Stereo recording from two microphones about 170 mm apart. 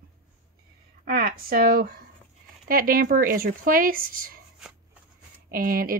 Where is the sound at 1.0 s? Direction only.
65° right (ahead or behind).